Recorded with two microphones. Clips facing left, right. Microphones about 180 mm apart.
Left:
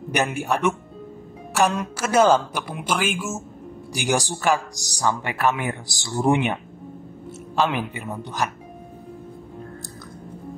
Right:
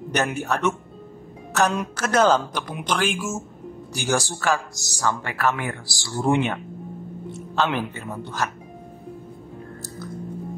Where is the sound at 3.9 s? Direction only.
15° left (ahead or behind).